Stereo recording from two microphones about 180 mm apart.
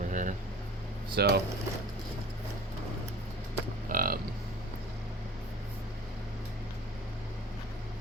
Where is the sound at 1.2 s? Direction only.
60° right (ahead or behind).